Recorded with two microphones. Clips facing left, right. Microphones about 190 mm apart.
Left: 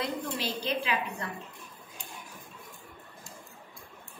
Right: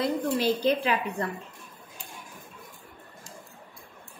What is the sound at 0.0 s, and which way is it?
Speech, 45° right (ahead or behind).